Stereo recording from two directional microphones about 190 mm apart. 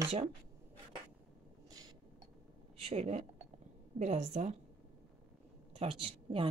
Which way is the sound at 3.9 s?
40° right (ahead or behind).